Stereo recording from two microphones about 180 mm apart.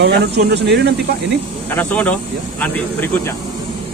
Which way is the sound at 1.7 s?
10° left (ahead or behind).